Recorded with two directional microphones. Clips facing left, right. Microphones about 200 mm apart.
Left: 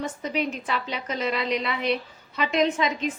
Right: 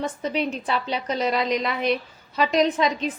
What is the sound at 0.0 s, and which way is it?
A woman's voice, 30° right (ahead or behind).